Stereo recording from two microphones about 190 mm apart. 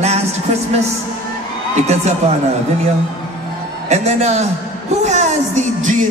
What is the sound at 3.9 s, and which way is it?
Speech, 35° right (ahead or behind).